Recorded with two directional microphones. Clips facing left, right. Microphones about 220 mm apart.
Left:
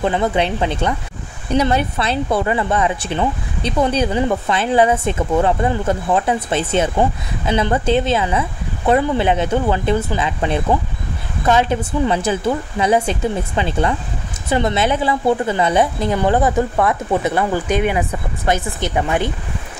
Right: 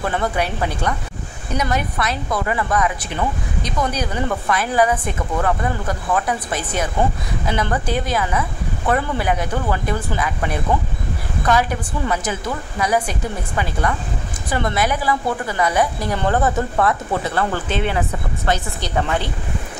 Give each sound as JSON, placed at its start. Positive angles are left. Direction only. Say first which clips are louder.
{"t": 0.0, "sound": "speech", "louder": "left 4 dB", "side_deg": 20}